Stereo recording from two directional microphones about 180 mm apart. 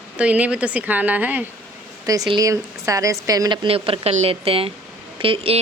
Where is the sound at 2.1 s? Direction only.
20° right (ahead or behind).